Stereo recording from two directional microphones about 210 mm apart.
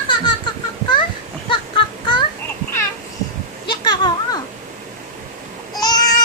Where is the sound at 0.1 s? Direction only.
20° left (ahead or behind).